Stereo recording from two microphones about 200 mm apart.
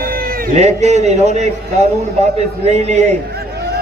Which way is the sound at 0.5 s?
35° right (ahead or behind).